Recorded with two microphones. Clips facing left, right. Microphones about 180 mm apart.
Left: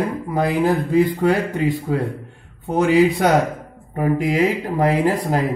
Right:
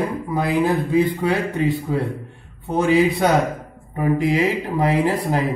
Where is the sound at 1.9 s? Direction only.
60° left (ahead or behind).